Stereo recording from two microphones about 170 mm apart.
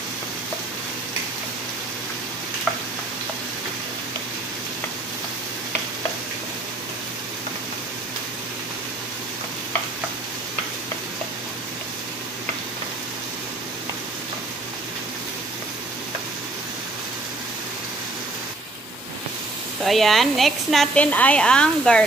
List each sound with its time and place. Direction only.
19.8 s speech: centre (ahead or behind)